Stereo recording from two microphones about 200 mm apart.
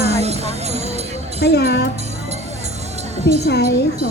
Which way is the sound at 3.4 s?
55° left (ahead or behind).